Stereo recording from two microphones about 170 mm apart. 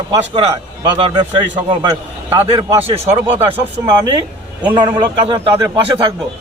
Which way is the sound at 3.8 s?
30° right (ahead or behind).